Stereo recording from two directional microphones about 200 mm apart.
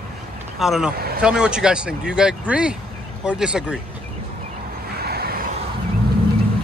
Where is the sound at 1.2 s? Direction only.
5° right (ahead or behind).